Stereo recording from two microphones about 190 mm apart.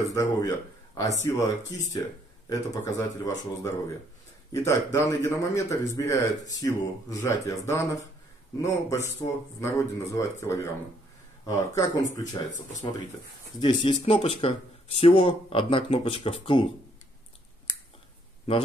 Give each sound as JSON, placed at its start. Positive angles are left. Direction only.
{"t": 0.1, "sound": "a man's voice", "side_deg": 15}
{"t": 2.5, "sound": "a man's voice", "side_deg": 15}